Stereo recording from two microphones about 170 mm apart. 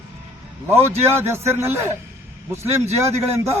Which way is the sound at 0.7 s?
15° right (ahead or behind).